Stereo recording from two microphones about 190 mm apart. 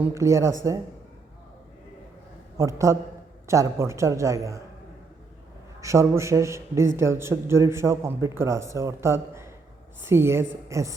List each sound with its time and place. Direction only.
0.0 s a man's voice: 15° right (ahead or behind)
2.6 s a man's voice: 15° right (ahead or behind)
5.8 s a man's voice: 15° right (ahead or behind)